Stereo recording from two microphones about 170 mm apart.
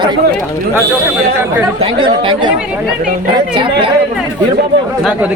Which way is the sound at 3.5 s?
30° right (ahead or behind).